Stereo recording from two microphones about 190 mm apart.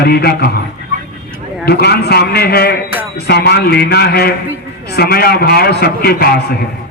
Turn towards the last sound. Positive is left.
turn(degrees=55)  # may be behind; listen again after turning